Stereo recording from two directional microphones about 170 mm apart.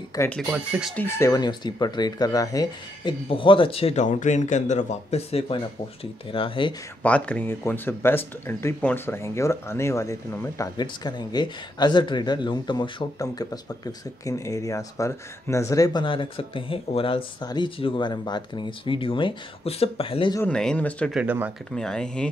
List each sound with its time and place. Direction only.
0.1 s speech: 20° left (ahead or behind)
0.5 s speech: 5° right (ahead or behind)
0.9 s speech: 15° left (ahead or behind); by 6.7 s 30° left (ahead or behind)
7.0 s speech: 5° left (ahead or behind); by 20.3 s 30° left (ahead or behind)
20.3 s speech: 5° left (ahead or behind)
21.1 s speech: 10° right (ahead or behind)
21.7 s speech: 5° left (ahead or behind)